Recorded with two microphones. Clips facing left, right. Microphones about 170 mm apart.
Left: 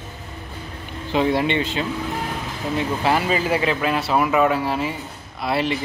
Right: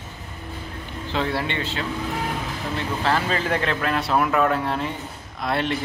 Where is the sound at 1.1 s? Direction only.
15° left (ahead or behind).